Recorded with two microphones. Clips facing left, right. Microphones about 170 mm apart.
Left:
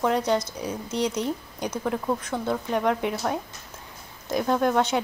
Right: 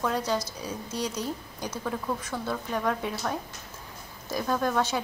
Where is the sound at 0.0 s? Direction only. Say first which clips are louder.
Left 5 dB; 20° left (ahead or behind).